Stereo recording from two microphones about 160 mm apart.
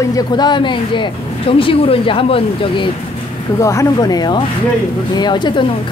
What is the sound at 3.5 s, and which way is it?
A woman's voice, 20° left (ahead or behind).